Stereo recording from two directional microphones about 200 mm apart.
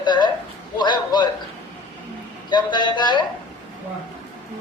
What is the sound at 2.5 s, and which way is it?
Speech, 20° left (ahead or behind).